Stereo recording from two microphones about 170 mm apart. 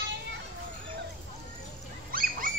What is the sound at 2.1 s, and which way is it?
Dog, 55° right (ahead or behind).